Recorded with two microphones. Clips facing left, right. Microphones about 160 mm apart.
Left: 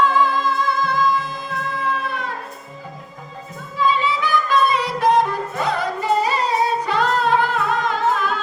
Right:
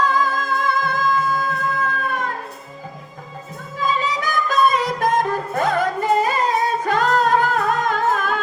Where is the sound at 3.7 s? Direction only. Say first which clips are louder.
Left 3 dB; 40° right (ahead or behind).